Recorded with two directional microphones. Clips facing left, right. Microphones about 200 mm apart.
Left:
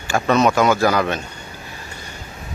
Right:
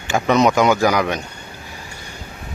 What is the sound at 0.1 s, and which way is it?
Speech, 15° right (ahead or behind).